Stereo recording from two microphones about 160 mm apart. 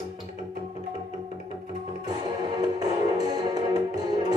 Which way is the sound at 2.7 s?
25° right (ahead or behind).